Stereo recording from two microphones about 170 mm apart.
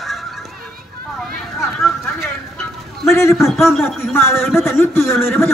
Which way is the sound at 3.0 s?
15° left (ahead or behind).